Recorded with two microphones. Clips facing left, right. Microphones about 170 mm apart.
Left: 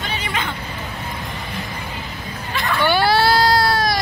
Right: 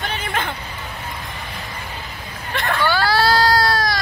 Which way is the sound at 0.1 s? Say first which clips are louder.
Left 2 dB; 55° right (ahead or behind).